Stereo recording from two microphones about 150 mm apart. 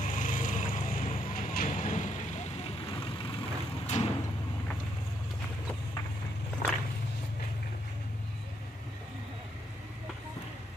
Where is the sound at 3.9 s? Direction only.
50° left (ahead or behind).